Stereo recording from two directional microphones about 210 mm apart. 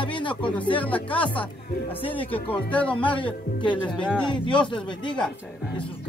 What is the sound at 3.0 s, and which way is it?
Speech, 25° left (ahead or behind).